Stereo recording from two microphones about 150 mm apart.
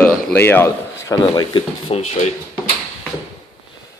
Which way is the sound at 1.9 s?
40° left (ahead or behind).